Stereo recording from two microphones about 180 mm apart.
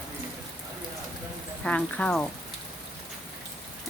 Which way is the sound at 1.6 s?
5° left (ahead or behind).